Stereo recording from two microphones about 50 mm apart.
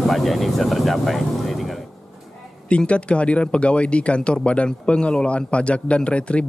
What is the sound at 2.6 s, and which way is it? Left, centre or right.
Speech, left.